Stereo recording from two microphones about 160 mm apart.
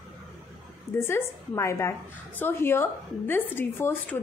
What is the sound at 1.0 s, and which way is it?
A woman's voice, 15° left (ahead or behind).